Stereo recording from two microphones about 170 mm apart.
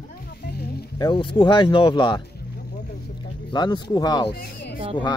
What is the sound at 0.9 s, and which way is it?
Speech, 25° left (ahead or behind).